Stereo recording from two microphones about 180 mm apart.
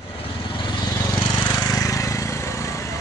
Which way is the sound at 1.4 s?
20° left (ahead or behind).